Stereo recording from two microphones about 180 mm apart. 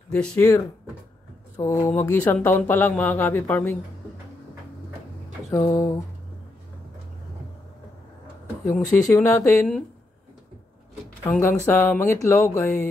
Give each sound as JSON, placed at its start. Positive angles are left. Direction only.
{"t": 0.1, "sound": "speech", "side_deg": 5}
{"t": 1.6, "sound": "speech", "side_deg": 15}
{"t": 5.5, "sound": "speech", "side_deg": 15}
{"t": 8.6, "sound": "speech", "side_deg": 10}
{"t": 11.2, "sound": "speech", "side_deg": 10}